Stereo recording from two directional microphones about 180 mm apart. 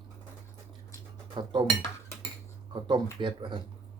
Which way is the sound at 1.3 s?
25° right (ahead or behind).